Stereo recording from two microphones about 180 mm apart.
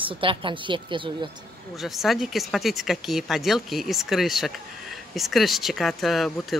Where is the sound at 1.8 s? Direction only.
Centre (ahead or behind).